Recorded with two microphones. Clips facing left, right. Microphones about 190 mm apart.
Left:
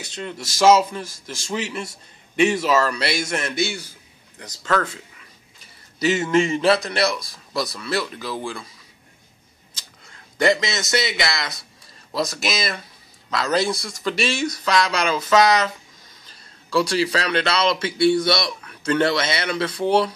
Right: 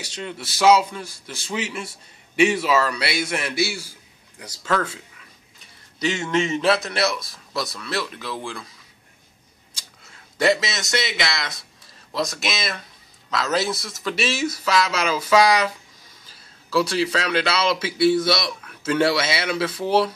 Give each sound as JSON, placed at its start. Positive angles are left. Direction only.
{"t": 0.4, "sound": "a man's voice", "side_deg": 45}
{"t": 1.5, "sound": "a man's voice", "side_deg": -5}
{"t": 5.6, "sound": "a man's voice", "side_deg": 5}
{"t": 9.8, "sound": "a man's voice", "side_deg": -5}